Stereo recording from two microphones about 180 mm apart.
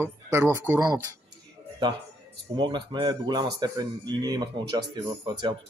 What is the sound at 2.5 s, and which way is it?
Speech, 25° right (ahead or behind).